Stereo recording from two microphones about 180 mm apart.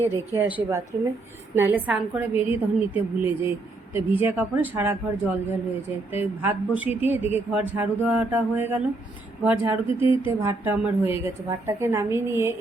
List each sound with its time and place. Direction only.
0.0 s a woman's voice: 10° right (ahead or behind)